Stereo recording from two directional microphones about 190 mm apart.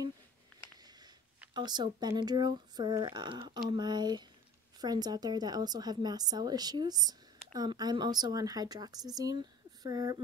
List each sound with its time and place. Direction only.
1.5 s speech: 20° right (ahead or behind)